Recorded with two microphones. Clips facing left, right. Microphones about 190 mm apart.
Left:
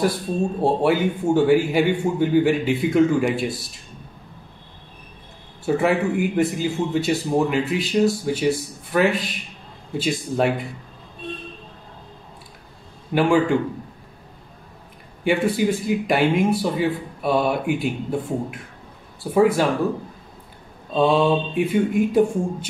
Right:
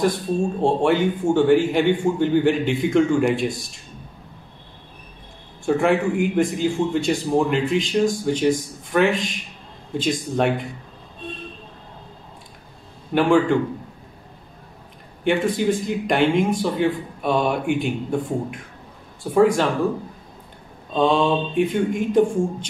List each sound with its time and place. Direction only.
0.6 s a man's voice: 5° left (ahead or behind)
5.7 s a man's voice: 5° left (ahead or behind)
13.1 s a man's voice: 10° left (ahead or behind)
15.2 s a man's voice: 5° left (ahead or behind)
20.9 s a man's voice: 5° left (ahead or behind)